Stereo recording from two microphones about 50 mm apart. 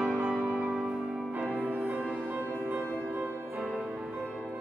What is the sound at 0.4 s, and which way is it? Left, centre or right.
Music, right.